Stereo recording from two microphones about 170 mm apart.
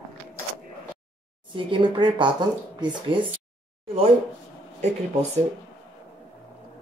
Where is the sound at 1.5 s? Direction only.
30° right (ahead or behind).